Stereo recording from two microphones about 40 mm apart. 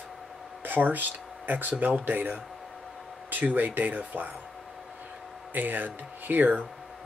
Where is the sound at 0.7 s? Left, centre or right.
Right.